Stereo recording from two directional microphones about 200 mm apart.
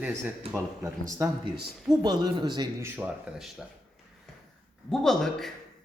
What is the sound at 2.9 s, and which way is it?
Speech, 5° right (ahead or behind).